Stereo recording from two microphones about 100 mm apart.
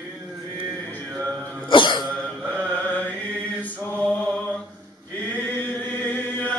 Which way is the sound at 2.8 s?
15° left (ahead or behind).